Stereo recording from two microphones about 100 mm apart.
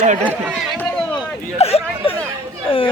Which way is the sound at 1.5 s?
85° left.